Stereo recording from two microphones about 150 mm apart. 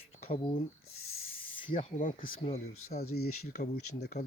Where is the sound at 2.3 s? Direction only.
45° left (ahead or behind).